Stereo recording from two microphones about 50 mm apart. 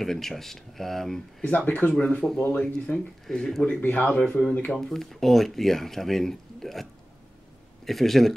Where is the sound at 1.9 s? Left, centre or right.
Left.